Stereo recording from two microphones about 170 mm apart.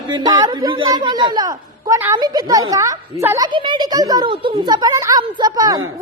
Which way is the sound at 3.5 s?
30° right (ahead or behind).